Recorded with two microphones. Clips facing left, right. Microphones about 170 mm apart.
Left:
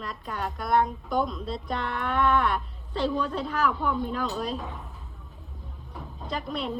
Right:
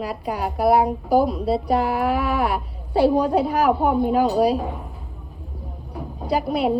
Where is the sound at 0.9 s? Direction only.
70° right (ahead or behind).